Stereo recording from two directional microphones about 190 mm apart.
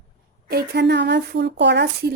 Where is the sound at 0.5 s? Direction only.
60° right (ahead or behind).